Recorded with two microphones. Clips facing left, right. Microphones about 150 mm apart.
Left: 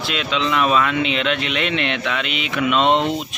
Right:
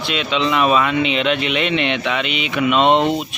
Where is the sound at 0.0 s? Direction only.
Centre (ahead or behind).